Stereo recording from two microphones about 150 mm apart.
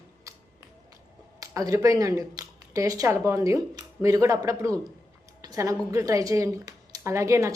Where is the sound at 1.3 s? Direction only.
20° right (ahead or behind).